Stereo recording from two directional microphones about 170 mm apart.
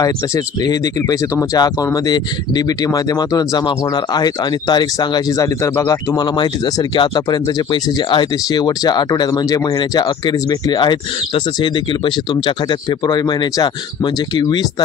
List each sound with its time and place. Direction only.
0.0 s speech: 20° left (ahead or behind)